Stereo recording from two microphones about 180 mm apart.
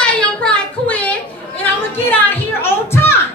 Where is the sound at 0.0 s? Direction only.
5° left (ahead or behind).